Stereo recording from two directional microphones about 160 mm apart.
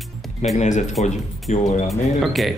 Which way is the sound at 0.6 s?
50° left (ahead or behind).